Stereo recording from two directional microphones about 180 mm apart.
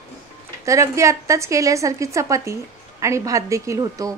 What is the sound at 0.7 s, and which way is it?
A woman's voice, 15° right (ahead or behind).